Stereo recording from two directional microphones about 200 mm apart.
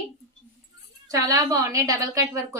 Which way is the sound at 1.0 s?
15° right (ahead or behind).